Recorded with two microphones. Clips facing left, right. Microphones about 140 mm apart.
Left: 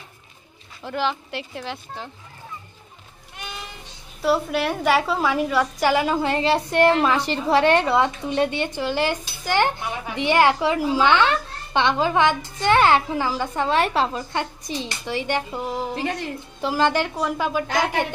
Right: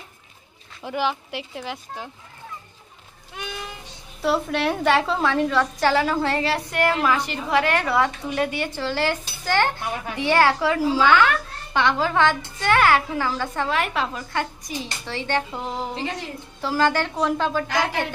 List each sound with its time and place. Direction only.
0.8 s speech: 10° right (ahead or behind)
4.2 s a woman's voice: 5° left (ahead or behind)
13.7 s a woman's voice: 30° left (ahead or behind)